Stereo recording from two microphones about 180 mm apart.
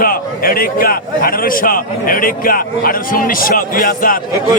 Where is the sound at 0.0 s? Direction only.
55° left (ahead or behind).